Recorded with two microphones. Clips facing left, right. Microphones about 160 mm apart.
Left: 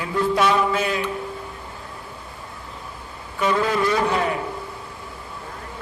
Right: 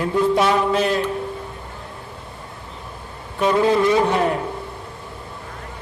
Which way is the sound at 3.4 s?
25° right (ahead or behind).